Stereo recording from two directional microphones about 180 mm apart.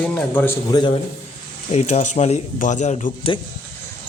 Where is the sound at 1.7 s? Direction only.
40° left (ahead or behind).